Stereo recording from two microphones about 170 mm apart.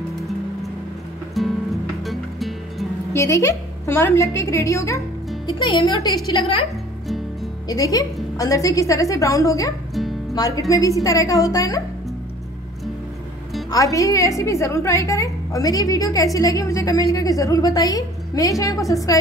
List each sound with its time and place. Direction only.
1.4 s music: centre (ahead or behind)
3.1 s a woman's voice: 15° left (ahead or behind)
5.5 s a woman's voice: 30° left (ahead or behind)
7.6 s a woman's voice: 20° left (ahead or behind)
13.7 s a woman's voice: 20° left (ahead or behind)